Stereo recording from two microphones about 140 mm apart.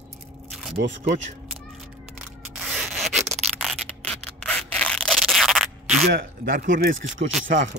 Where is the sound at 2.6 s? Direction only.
5° right (ahead or behind).